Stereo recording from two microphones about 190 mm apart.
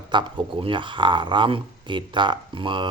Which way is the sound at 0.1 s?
25° right (ahead or behind).